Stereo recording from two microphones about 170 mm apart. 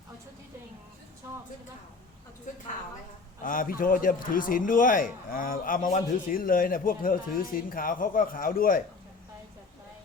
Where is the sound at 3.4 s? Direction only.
55° left (ahead or behind).